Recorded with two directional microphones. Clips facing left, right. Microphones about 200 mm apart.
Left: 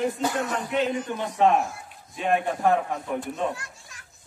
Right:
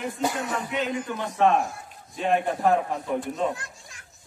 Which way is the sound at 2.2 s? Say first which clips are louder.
Even; centre (ahead or behind).